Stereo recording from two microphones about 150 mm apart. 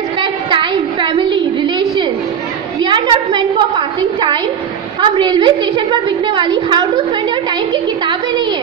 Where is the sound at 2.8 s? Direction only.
30° right (ahead or behind).